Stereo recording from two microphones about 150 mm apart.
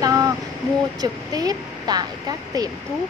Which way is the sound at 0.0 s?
25° right (ahead or behind).